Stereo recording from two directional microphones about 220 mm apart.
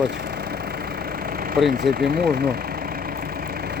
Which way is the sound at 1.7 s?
45° right (ahead or behind).